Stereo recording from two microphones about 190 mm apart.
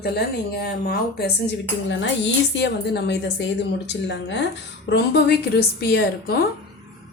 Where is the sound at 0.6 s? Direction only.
60° left (ahead or behind).